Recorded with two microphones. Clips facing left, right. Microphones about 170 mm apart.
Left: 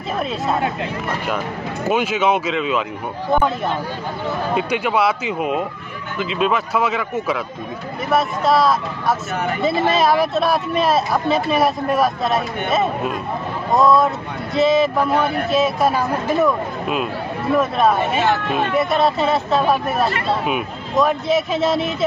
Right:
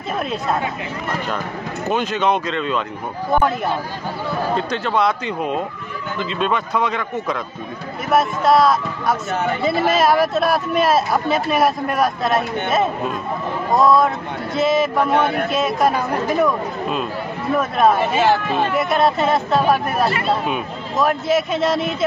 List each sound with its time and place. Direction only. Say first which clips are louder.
0.2 s speech: left 1 dB; centre (ahead or behind)
1.9 s speech: left 1 dB; 10° left (ahead or behind)
4.6 s speech: left 3 dB; 10° left (ahead or behind)
18.2 s speech: right 2 dB; 30° right (ahead or behind)
18.8 s speech: left 1 dB; centre (ahead or behind)